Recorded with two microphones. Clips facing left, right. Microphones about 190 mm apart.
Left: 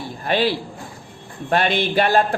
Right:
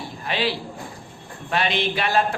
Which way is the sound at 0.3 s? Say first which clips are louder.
Left 5 dB; 50° left (ahead or behind).